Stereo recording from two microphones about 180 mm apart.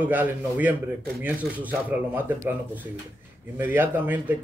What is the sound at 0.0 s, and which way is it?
Speech, 10° right (ahead or behind).